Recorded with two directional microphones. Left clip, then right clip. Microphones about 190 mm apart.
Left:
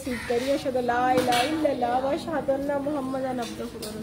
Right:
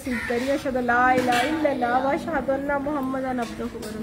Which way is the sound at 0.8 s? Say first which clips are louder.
Right 5 dB; 10° left (ahead or behind).